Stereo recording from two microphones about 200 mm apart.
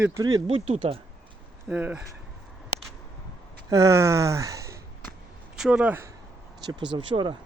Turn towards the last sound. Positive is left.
turn(degrees=-25)  # may be behind; listen again after turning